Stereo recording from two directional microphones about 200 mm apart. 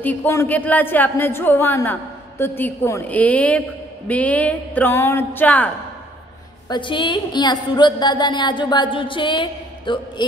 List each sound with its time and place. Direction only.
0.0 s a woman's voice: 10° left (ahead or behind)
6.7 s a woman's voice: 25° left (ahead or behind)